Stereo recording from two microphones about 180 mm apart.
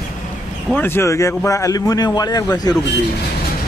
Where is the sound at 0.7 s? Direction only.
10° left (ahead or behind).